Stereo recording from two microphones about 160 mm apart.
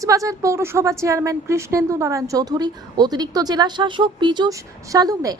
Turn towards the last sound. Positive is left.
turn(degrees=-20)  # may be behind; listen again after turning